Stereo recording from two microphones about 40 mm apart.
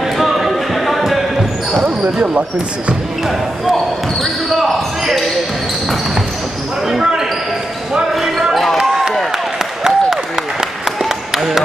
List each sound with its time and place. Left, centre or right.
0.0 s basketball bounce: centre
1.8 s basketball bounce: right
6.9 s speech: centre
8.1 s basketball bounce: centre
9.6 s applause: centre
11.0 s a sound: centre